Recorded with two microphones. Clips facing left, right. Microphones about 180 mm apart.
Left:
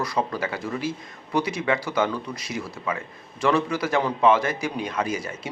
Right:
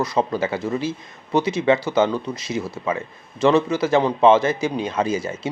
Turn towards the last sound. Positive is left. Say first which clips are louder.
# right 5 dB
turn(degrees=-25)  # may be behind; listen again after turning